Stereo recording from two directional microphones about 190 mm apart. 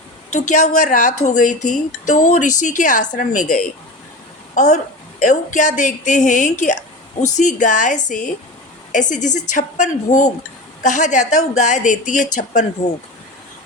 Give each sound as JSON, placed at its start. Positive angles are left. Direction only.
{"t": 0.3, "sound": "a woman's voice", "side_deg": 40}
{"t": 4.5, "sound": "a woman's voice", "side_deg": 40}